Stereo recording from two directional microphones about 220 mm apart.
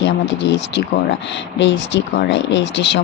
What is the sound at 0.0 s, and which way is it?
Speech, 55° left (ahead or behind).